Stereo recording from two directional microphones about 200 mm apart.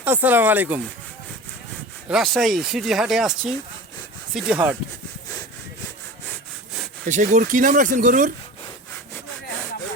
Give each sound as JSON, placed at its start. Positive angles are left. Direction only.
{"t": 0.0, "sound": "speech", "side_deg": -10}
{"t": 2.0, "sound": "speech", "side_deg": 0}
{"t": 7.0, "sound": "speech", "side_deg": -40}